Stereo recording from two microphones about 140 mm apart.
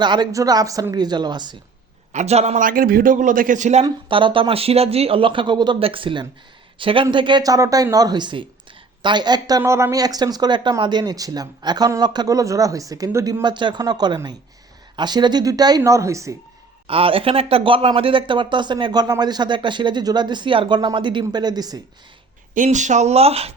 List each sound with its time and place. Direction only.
0.0 s speech: 30° right (ahead or behind)
2.1 s speech: 50° right (ahead or behind)
2.6 s a man's voice: 85° right; by 3.8 s 55° right (ahead or behind)
3.8 s speech: 35° right (ahead or behind)
13.4 s speech: 35° right (ahead or behind)
16.8 s speech: 40° right (ahead or behind)
22.5 s speech: 60° right (ahead or behind); by 23.6 s 45° right (ahead or behind)